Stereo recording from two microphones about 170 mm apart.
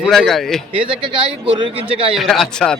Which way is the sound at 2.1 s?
Centre (ahead or behind).